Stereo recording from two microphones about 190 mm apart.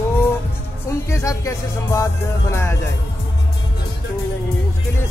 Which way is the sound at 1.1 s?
15° left (ahead or behind).